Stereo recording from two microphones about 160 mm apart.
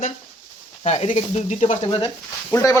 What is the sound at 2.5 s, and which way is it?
Speech, 20° left (ahead or behind).